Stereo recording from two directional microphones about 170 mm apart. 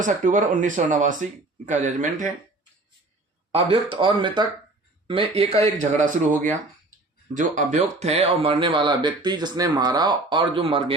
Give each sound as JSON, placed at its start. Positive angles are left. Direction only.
{"t": 0.0, "sound": "speech", "side_deg": -50}
{"t": 3.5, "sound": "speech", "side_deg": -30}